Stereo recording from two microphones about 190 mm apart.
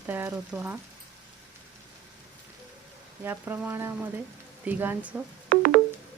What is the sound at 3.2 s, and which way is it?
Speech, 10° right (ahead or behind).